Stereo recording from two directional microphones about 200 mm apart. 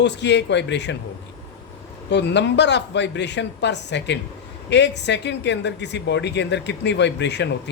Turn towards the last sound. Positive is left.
turn(degrees=60)  # may be behind; listen again after turning